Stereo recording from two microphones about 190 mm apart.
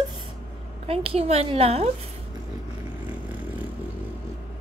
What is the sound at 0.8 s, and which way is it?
A woman's voice, 30° right (ahead or behind).